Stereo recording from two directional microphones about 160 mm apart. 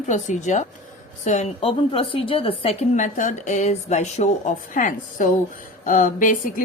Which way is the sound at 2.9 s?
50° left (ahead or behind).